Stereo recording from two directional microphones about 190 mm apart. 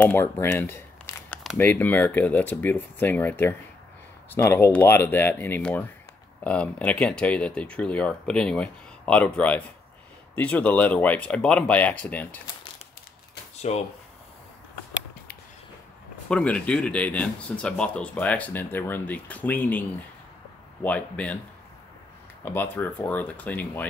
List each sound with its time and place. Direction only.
0.0 s speech: 10° left (ahead or behind)
13.6 s speech: 35° left (ahead or behind)
16.3 s speech: 5° left (ahead or behind)
20.8 s speech: 5° left (ahead or behind)
22.4 s speech: 10° left (ahead or behind)